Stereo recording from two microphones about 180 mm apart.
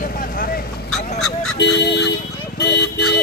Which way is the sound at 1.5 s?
75° left (ahead or behind).